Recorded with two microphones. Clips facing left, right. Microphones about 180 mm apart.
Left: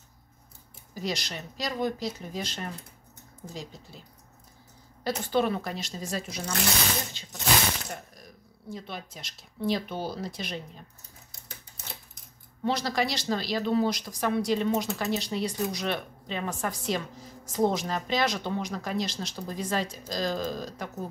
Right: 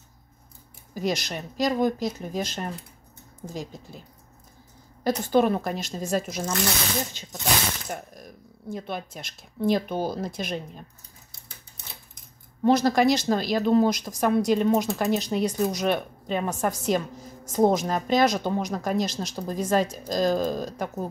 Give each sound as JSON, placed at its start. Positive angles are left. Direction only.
{"t": 0.9, "sound": "speech", "side_deg": -50}
{"t": 5.0, "sound": "speech", "side_deg": -45}
{"t": 8.1, "sound": "speech", "side_deg": -50}
{"t": 12.6, "sound": "speech", "side_deg": -50}